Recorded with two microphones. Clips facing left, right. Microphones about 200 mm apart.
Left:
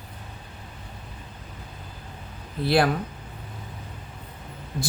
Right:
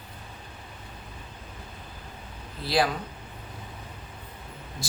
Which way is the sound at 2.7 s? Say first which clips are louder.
Left 4 dB; 55° left (ahead or behind).